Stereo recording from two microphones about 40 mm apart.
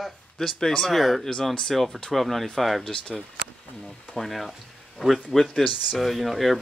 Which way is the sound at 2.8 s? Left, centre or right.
Centre.